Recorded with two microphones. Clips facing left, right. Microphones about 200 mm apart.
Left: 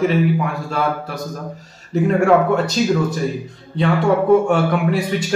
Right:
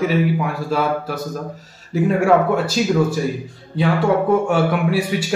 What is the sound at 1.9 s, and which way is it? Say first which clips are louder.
A man's voice: left 1 dB; 5° right (ahead or behind).